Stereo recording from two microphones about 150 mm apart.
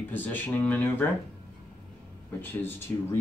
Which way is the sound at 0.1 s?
10° left (ahead or behind).